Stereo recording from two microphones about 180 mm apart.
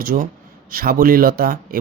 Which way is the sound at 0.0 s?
55° right (ahead or behind).